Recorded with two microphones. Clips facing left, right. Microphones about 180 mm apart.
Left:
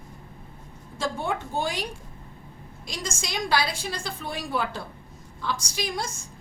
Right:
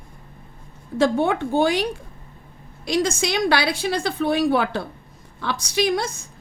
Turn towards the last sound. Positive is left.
turn(degrees=-65)  # may be behind; listen again after turning